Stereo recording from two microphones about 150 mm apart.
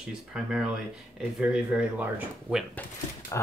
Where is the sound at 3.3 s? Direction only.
20° left (ahead or behind).